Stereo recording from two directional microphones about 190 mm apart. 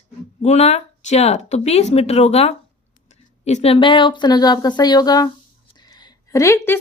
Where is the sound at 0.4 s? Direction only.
35° left (ahead or behind).